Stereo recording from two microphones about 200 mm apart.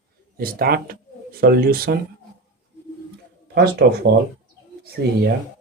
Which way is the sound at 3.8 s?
55° right (ahead or behind).